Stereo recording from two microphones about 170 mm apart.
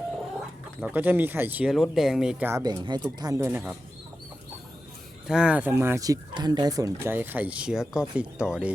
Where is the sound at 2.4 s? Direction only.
20° right (ahead or behind).